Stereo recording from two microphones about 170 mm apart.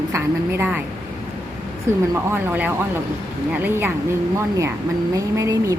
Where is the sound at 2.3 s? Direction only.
10° right (ahead or behind).